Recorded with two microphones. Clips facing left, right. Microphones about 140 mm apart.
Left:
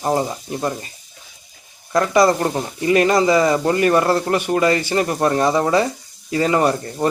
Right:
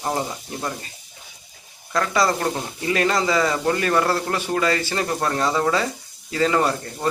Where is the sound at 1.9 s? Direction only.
20° left (ahead or behind).